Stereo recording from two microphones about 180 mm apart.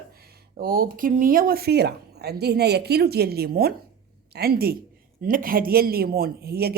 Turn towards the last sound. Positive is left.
turn(degrees=-60)  # may be behind; listen again after turning